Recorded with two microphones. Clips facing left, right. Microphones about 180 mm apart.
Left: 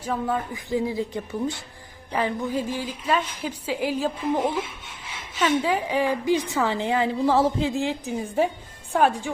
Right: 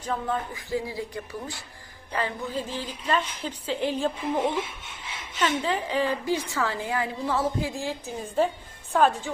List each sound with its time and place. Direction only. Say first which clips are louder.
0.0 s a woman's voice: left 3 dB; 5° left (ahead or behind)
0.5 s a woman's voice: left 5 dB; 20° left (ahead or behind)